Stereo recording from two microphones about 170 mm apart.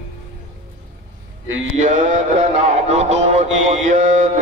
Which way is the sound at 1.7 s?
45° right (ahead or behind).